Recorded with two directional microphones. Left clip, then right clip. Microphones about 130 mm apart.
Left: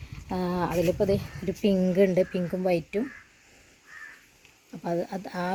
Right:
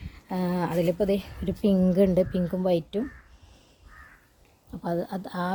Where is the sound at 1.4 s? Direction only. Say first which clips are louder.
Even; 55° right (ahead or behind).